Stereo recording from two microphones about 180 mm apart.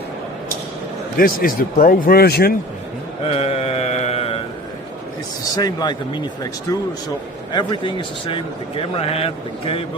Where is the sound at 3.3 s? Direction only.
35° left (ahead or behind).